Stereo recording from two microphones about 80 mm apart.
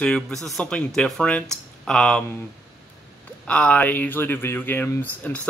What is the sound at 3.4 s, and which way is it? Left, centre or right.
Speech, centre.